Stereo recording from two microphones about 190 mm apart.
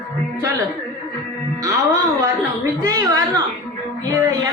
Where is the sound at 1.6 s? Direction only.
15° right (ahead or behind).